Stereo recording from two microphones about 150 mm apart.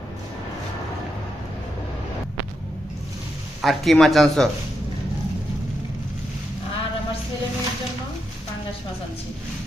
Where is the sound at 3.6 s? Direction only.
Centre (ahead or behind).